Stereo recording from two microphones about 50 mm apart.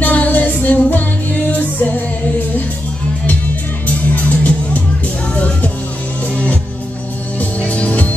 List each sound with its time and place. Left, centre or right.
0.0 s music: left
3.8 s music: left